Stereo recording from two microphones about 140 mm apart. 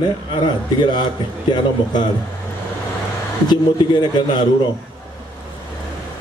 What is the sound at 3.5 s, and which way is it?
Speech, 30° left (ahead or behind).